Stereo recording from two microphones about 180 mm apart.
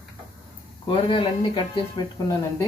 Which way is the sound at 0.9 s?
30° left (ahead or behind).